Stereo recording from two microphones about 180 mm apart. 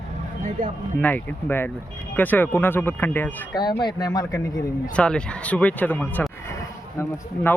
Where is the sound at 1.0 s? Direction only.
10° left (ahead or behind).